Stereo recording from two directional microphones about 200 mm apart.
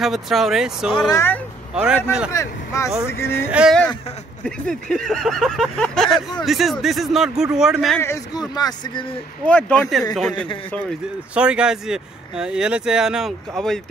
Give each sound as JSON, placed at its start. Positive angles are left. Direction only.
{"t": 0.0, "sound": "speech", "side_deg": 0}
{"t": 1.1, "sound": "speech", "side_deg": 10}
{"t": 1.8, "sound": "speech", "side_deg": -5}
{"t": 2.3, "sound": "speech", "side_deg": 15}
{"t": 3.5, "sound": "speech", "side_deg": 0}
{"t": 8.0, "sound": "speech", "side_deg": 15}
{"t": 9.5, "sound": "speech", "side_deg": 5}